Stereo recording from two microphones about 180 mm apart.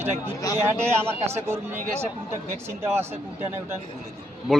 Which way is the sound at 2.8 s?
15° right (ahead or behind).